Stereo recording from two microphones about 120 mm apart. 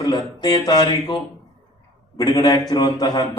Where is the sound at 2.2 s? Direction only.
35° left (ahead or behind).